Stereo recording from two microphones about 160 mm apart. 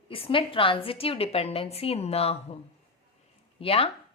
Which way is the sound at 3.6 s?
35° left (ahead or behind).